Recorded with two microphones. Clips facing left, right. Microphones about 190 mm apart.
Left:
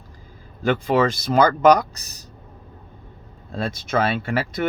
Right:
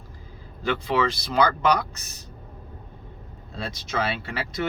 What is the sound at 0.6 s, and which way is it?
Speech, 50° left (ahead or behind).